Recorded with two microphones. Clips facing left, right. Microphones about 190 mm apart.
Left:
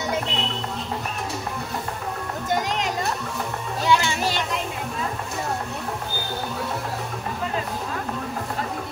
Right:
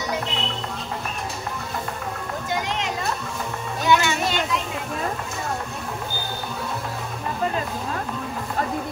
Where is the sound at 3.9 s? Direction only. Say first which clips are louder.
Right 1 dB; 35° left (ahead or behind).